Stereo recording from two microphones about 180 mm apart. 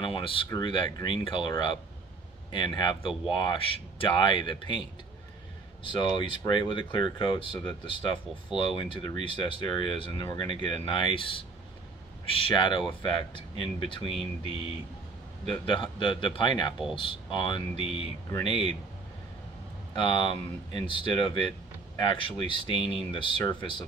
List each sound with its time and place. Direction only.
0.0 s speech: 30° left (ahead or behind)
2.5 s speech: 25° left (ahead or behind)
5.9 s speech: 25° left (ahead or behind)
15.5 s speech: 25° left (ahead or behind)
19.9 s speech: 25° left (ahead or behind)